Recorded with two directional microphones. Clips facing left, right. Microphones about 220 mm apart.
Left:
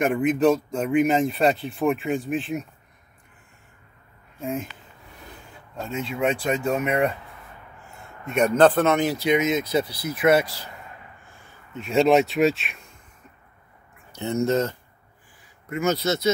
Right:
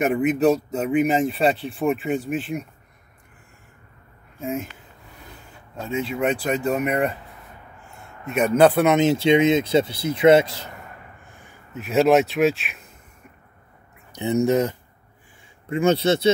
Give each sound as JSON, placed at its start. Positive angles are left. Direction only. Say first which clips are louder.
{"t": 0.0, "sound": "speech", "louder": "right 1 dB", "side_deg": -5}
{"t": 4.4, "sound": "speech", "louder": "right 1 dB", "side_deg": -5}
{"t": 5.8, "sound": "speech", "louder": "right 2 dB", "side_deg": 0}
{"t": 11.2, "sound": "a sound", "louder": "right 3 dB", "side_deg": -20}
{"t": 11.7, "sound": "speech", "louder": "right 1 dB", "side_deg": -5}
{"t": 14.1, "sound": "speech", "louder": "right 3 dB", "side_deg": -15}
{"t": 15.7, "sound": "speech", "louder": "right 5 dB", "side_deg": -30}